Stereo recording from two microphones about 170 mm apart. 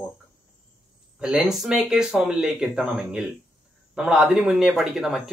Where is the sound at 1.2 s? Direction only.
5° right (ahead or behind).